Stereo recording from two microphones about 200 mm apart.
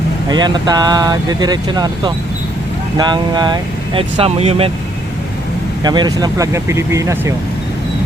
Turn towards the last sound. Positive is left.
turn(degrees=-15)  # may be behind; listen again after turning